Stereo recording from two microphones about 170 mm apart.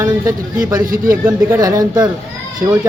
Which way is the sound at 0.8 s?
55° right (ahead or behind).